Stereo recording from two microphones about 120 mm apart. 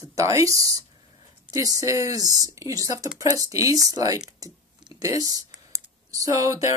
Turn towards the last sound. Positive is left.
turn(degrees=-30)  # may be behind; listen again after turning